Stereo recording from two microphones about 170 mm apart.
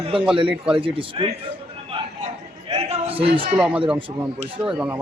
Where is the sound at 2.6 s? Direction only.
35° right (ahead or behind).